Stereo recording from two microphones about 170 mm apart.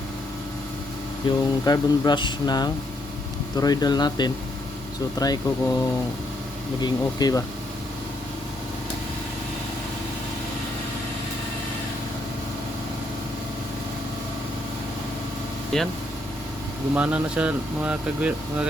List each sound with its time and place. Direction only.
1.2 s speech: 30° left (ahead or behind)
6.8 s speech: 25° left (ahead or behind)
15.7 s speech: centre (ahead or behind)
16.9 s speech: 10° right (ahead or behind)